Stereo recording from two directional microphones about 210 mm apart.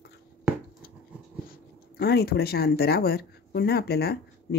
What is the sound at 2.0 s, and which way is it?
Speech, 50° left (ahead or behind).